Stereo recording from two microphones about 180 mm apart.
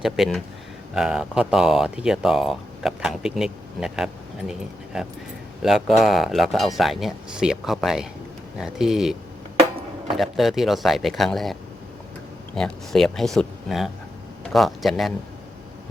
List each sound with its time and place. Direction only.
0.0 s speech: centre (ahead or behind)
5.6 s speech: centre (ahead or behind)
10.2 s speech: centre (ahead or behind)
12.5 s speech: 5° left (ahead or behind)